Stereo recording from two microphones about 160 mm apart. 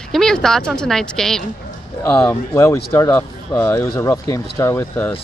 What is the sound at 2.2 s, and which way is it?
Speech, 20° left (ahead or behind).